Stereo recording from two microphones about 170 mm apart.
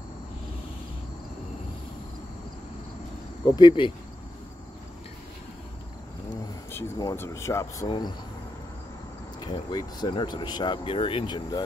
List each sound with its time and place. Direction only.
3.4 s speech: 25° left (ahead or behind)
6.7 s speech: 20° left (ahead or behind)
9.4 s speech: 25° left (ahead or behind)